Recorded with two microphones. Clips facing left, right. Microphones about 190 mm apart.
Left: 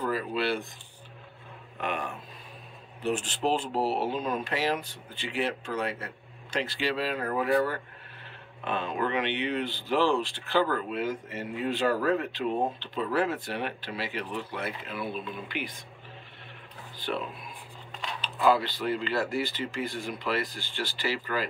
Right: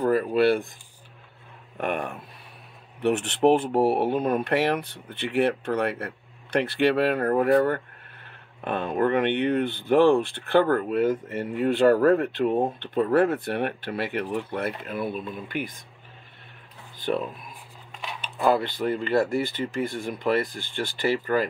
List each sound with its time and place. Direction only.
0.0 s speech: 55° right (ahead or behind)
1.8 s speech: 55° right (ahead or behind)
3.0 s speech: 65° right (ahead or behind); by 15.7 s 50° right (ahead or behind)
18.4 s speech: 50° right (ahead or behind)